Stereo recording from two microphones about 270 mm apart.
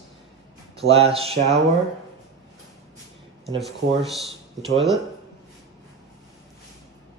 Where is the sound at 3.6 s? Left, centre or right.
Centre.